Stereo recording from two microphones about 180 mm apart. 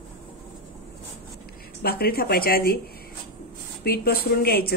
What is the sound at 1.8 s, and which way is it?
Speech, 60° left (ahead or behind).